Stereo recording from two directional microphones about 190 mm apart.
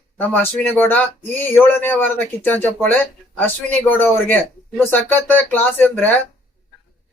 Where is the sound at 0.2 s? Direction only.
10° left (ahead or behind).